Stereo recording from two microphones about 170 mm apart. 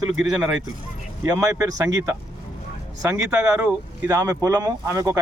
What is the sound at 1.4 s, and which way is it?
Speech, 20° right (ahead or behind).